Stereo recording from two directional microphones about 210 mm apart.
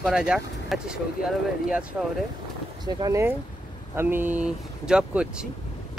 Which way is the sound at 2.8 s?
20° right (ahead or behind).